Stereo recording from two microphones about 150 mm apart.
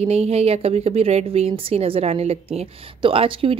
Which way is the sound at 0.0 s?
45° right (ahead or behind).